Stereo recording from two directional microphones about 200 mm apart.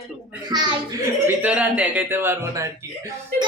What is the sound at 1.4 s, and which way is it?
Speech, 5° right (ahead or behind).